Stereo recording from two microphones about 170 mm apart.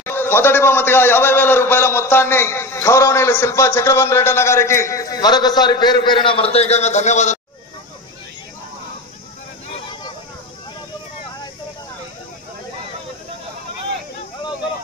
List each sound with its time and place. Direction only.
0.0 s a man's voice: 15° left (ahead or behind); by 7.3 s 45° left (ahead or behind)